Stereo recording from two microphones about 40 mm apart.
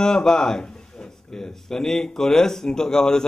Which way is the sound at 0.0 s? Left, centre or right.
Centre.